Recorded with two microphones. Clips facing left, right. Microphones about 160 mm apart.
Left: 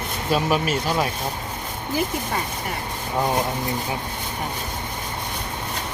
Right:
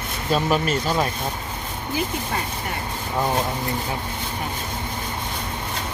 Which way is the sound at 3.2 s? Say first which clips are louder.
Left 1 dB; 15° left (ahead or behind).